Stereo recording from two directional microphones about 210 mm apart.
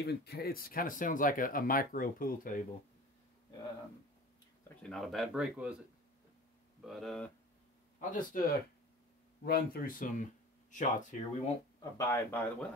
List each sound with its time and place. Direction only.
0.0 s speech: 50° left (ahead or behind)
4.8 s speech: centre (ahead or behind)
6.8 s speech: centre (ahead or behind)
8.0 s speech: 40° left (ahead or behind)
12.0 s speech: 10° left (ahead or behind)